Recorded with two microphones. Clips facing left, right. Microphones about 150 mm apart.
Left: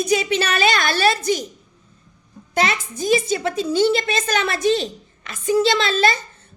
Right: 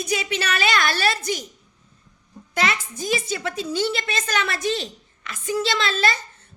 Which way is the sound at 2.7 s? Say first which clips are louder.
Left 5 dB; 20° left (ahead or behind).